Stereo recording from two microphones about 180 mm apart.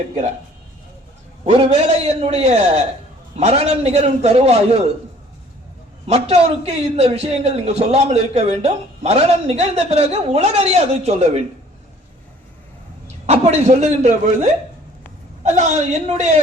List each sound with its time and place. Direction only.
1.5 s a man's voice: 35° right (ahead or behind)
6.1 s a man's voice: 35° right (ahead or behind)
13.2 s a man's voice: 35° right (ahead or behind)
15.4 s a man's voice: 40° right (ahead or behind)